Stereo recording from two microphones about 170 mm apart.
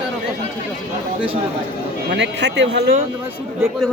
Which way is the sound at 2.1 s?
90° right.